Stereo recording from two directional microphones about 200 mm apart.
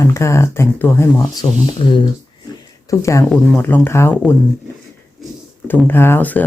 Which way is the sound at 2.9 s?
15° left (ahead or behind).